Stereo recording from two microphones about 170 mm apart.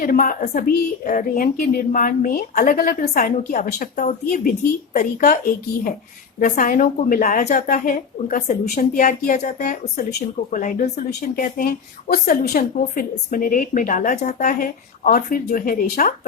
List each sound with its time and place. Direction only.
0.0 s a woman's voice: 55° left (ahead or behind)
6.4 s a woman's voice: 55° left (ahead or behind)
8.6 s a woman's voice: 65° left (ahead or behind)
9.2 s speech: 45° left (ahead or behind)
10.0 s a woman's voice: 65° left (ahead or behind)